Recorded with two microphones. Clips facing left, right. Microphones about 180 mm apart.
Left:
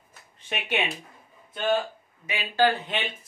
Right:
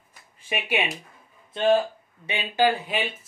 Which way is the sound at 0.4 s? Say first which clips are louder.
Right 2 dB; 10° right (ahead or behind).